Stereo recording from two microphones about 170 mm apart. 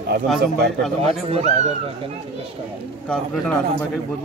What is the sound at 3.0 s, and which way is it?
Speech, 5° left (ahead or behind).